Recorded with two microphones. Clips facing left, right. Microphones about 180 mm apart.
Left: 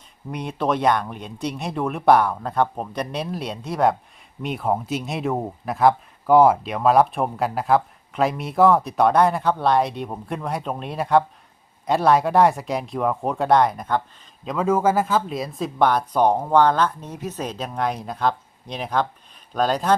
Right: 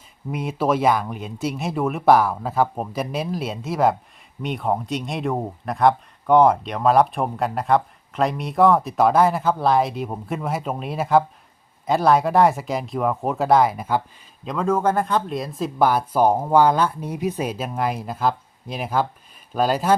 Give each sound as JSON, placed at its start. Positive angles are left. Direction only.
{"t": 0.3, "sound": "speech", "side_deg": -5}
{"t": 14.4, "sound": "speech", "side_deg": 5}